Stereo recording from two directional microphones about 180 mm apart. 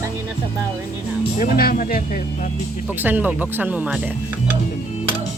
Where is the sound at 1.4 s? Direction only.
55° left (ahead or behind).